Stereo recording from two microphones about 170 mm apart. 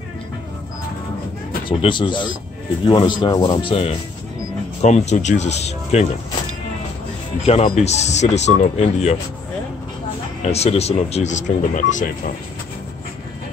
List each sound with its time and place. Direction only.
1.7 s speech: 30° left (ahead or behind)
4.8 s speech: 45° left (ahead or behind)
7.4 s speech: 35° left (ahead or behind)
10.4 s speech: 40° left (ahead or behind)